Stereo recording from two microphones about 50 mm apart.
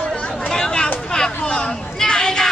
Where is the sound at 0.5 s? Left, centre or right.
Centre.